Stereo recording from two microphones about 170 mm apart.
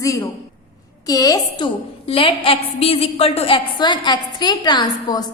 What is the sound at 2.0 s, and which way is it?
A woman's voice, 35° left (ahead or behind).